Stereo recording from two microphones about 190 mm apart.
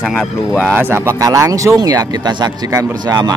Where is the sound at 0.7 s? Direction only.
15° right (ahead or behind).